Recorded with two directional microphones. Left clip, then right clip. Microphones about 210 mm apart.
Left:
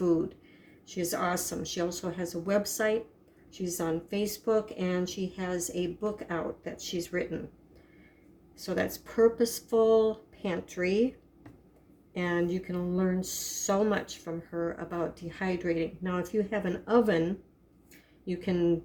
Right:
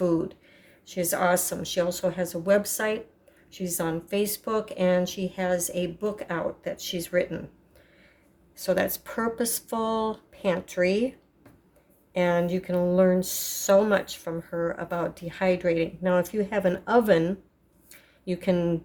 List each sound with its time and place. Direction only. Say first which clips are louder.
0.9 s speech: right 7 dB; 45° right (ahead or behind)
8.5 s speech: right 7 dB; 50° right (ahead or behind)
12.1 s speech: right 6 dB; 50° right (ahead or behind)